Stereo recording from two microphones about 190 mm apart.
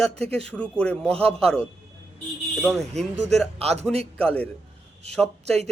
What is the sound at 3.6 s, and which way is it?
Speech, 35° right (ahead or behind).